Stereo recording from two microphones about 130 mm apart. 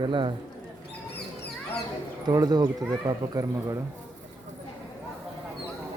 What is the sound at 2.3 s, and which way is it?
Speech, 30° right (ahead or behind).